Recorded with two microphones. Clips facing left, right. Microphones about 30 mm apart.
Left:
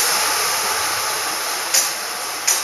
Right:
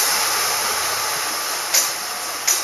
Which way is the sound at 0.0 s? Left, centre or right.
Centre.